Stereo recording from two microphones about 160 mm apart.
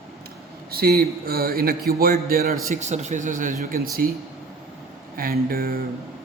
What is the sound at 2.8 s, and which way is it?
A man's voice, 45° right (ahead or behind).